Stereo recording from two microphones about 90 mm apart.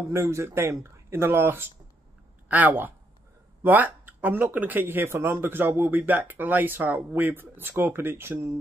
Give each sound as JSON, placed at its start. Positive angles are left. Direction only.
{"t": 0.1, "sound": "speech", "side_deg": -30}